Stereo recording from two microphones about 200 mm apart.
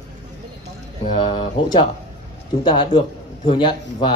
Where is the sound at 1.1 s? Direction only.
25° left (ahead or behind).